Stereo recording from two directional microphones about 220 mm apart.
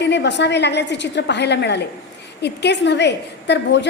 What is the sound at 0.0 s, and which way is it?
A woman's voice, 50° left (ahead or behind).